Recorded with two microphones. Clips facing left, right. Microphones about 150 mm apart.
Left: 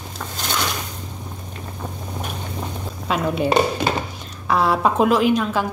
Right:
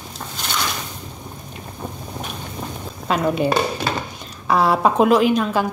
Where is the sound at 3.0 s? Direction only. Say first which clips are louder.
Right 2 dB; centre (ahead or behind).